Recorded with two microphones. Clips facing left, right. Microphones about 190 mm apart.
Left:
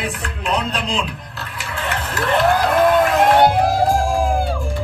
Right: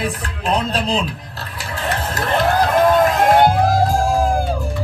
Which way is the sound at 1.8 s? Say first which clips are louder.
Right 1 dB; 35° right (ahead or behind).